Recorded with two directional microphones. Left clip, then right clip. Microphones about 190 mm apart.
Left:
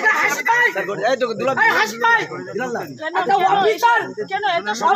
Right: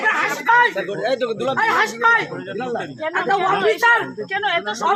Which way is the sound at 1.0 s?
40° left (ahead or behind).